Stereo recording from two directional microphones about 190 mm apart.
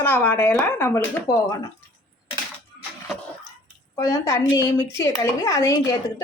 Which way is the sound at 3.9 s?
15° left (ahead or behind).